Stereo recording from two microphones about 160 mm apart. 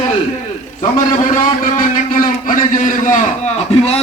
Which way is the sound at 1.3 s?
55° left (ahead or behind).